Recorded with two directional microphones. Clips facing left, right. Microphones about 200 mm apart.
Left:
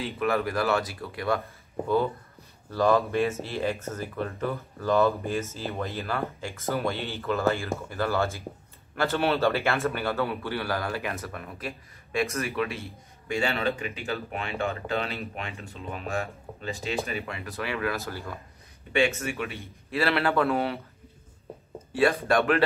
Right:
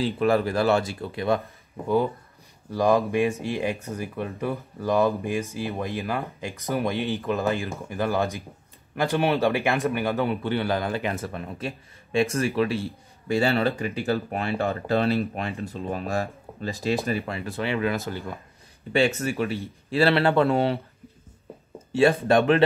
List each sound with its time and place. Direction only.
0.0 s speech: 30° right (ahead or behind)
2.7 s speech: 15° right (ahead or behind)
18.9 s speech: 35° right (ahead or behind)
21.9 s speech: 25° right (ahead or behind)